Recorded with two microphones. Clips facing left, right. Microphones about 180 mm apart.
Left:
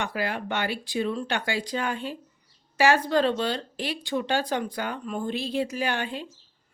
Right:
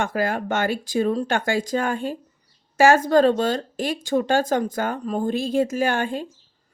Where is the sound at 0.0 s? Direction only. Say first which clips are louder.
Right 6 dB; 45° right (ahead or behind).